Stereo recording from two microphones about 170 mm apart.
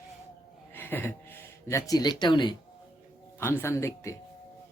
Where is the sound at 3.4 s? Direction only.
15° left (ahead or behind).